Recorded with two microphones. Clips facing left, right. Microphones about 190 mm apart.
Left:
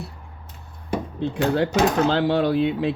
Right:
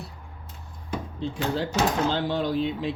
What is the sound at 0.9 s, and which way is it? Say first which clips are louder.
Speech: left 5 dB; 65° left (ahead or behind).